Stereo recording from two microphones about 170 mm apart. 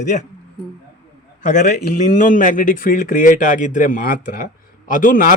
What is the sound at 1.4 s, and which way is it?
A man's voice, 45° left (ahead or behind).